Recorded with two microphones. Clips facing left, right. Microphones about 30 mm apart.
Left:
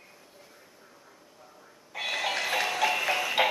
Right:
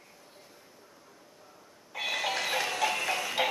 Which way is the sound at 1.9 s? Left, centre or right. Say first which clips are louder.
Left 1 dB; centre.